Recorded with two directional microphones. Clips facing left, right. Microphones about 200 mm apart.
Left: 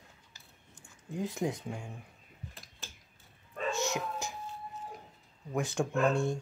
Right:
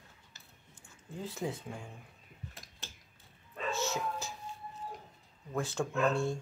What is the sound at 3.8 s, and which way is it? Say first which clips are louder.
Dog: left 1 dB; 15° left (ahead or behind).